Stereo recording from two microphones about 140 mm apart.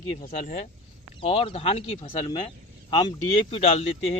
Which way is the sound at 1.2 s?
40° left (ahead or behind).